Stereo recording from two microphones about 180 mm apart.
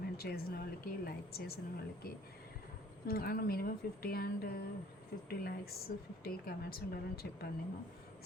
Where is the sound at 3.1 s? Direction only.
55° left (ahead or behind).